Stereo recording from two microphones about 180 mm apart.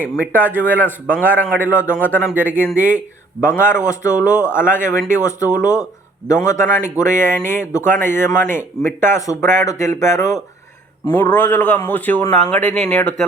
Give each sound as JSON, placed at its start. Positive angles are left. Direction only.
{"t": 0.0, "sound": "speech", "side_deg": -10}
{"t": 0.6, "sound": "a man's voice", "side_deg": 10}
{"t": 2.3, "sound": "speech", "side_deg": -10}
{"t": 3.4, "sound": "a man's voice", "side_deg": 10}